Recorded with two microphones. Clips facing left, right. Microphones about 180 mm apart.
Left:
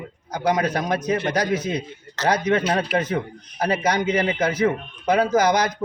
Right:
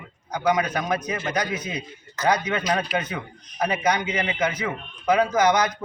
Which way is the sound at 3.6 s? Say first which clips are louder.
Left 2 dB; 35° left (ahead or behind).